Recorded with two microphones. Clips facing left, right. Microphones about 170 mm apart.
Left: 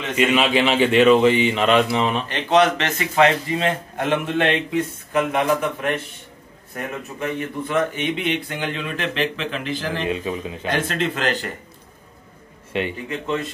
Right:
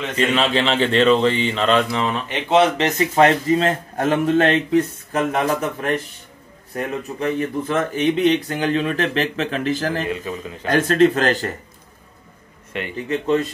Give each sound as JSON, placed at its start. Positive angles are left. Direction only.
{"t": 0.1, "sound": "speech", "side_deg": 10}
{"t": 2.5, "sound": "a man's voice", "side_deg": -30}
{"t": 10.0, "sound": "speech", "side_deg": 20}
{"t": 10.7, "sound": "a man's voice", "side_deg": -45}
{"t": 12.7, "sound": "speech", "side_deg": 20}